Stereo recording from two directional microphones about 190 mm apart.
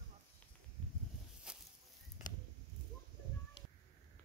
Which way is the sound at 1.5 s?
5° right (ahead or behind).